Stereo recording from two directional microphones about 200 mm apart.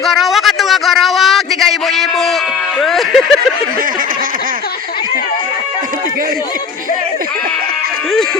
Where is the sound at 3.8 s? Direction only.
45° right (ahead or behind).